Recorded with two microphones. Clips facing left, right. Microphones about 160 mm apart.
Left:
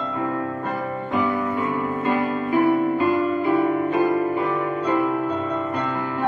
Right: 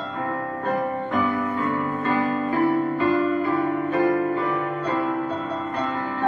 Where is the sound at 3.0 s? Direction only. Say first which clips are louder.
Even; 20° left (ahead or behind).